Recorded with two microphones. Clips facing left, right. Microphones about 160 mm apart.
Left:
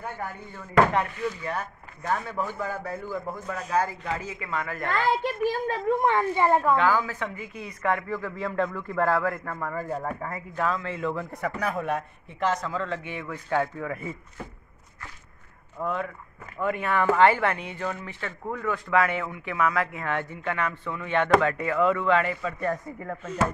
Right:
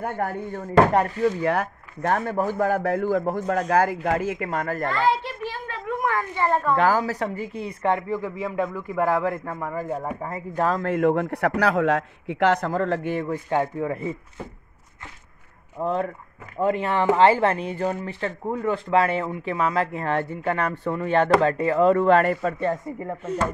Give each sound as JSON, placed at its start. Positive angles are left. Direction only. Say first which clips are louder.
{"t": 0.0, "sound": "a man's voice", "louder": "right 8 dB", "side_deg": -60}
{"t": 0.7, "sound": "speech", "louder": "right 4 dB", "side_deg": -35}
{"t": 1.4, "sound": "speech", "louder": "right 9 dB", "side_deg": -70}
{"t": 2.2, "sound": "speech", "louder": "right 7 dB", "side_deg": -45}
{"t": 2.6, "sound": "a man's voice", "louder": "right 10 dB", "side_deg": -70}
{"t": 4.1, "sound": "speech", "louder": "right 7 dB", "side_deg": -55}
{"t": 5.5, "sound": "a sound", "louder": "left 5 dB", "side_deg": 35}
{"t": 6.4, "sound": "speech", "louder": "even", "side_deg": 10}
{"t": 6.8, "sound": "speech", "louder": "right 3 dB", "side_deg": -40}
{"t": 10.5, "sound": "a man's voice", "louder": "right 6 dB", "side_deg": -40}
{"t": 13.5, "sound": "speech", "louder": "right 1 dB", "side_deg": -25}
{"t": 15.8, "sound": "speech", "louder": "right 5 dB", "side_deg": -35}
{"t": 22.6, "sound": "speech", "louder": "right 4 dB", "side_deg": -25}